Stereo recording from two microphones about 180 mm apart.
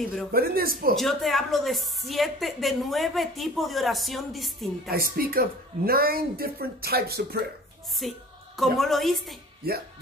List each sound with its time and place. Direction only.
0.3 s a woman's voice: 55° right (ahead or behind)
0.9 s a woman's voice: centre (ahead or behind)
4.8 s a woman's voice: 55° right (ahead or behind)
8.0 s a woman's voice: centre (ahead or behind)